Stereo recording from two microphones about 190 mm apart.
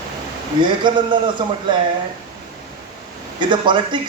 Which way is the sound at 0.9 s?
25° right (ahead or behind).